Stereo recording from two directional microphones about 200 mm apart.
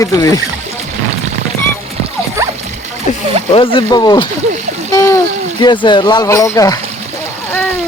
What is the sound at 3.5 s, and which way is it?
Speech, 25° left (ahead or behind).